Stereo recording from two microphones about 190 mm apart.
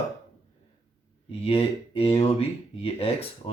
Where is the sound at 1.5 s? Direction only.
30° left (ahead or behind).